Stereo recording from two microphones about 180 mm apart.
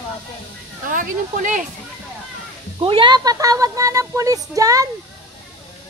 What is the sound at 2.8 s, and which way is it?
Speech, 30° right (ahead or behind).